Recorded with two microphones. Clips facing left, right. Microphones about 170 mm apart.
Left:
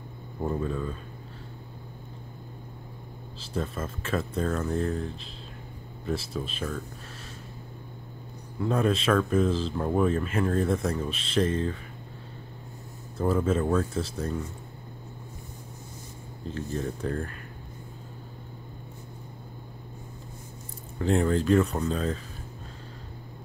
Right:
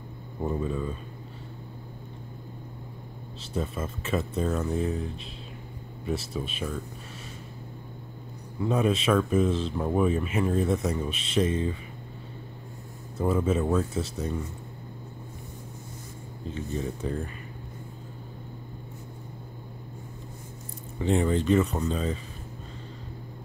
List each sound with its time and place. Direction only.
0.4 s speech: 5° right (ahead or behind)
3.5 s speech: 5° right (ahead or behind)
8.6 s speech: 5° right (ahead or behind)
13.2 s speech: 5° right (ahead or behind)
16.4 s speech: centre (ahead or behind)
21.0 s speech: centre (ahead or behind)